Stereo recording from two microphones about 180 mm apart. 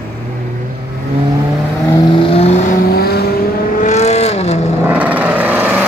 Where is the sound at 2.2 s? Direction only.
30° left (ahead or behind).